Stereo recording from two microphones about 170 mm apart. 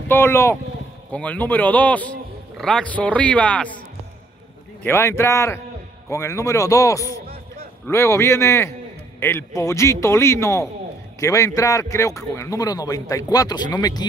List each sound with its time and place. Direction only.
0.1 s a man's voice: 15° left (ahead or behind)
4.8 s a man's voice: 15° left (ahead or behind)